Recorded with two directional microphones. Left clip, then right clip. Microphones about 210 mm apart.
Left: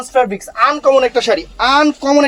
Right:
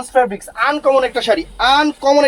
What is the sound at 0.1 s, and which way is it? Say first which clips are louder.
Speech: left 1 dB; 35° left (ahead or behind).